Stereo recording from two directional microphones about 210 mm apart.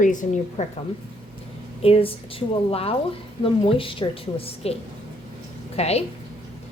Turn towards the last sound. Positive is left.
turn(degrees=30)  # may be behind; listen again after turning